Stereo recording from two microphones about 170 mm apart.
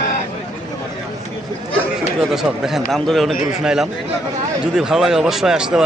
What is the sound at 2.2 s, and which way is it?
Speech, centre (ahead or behind).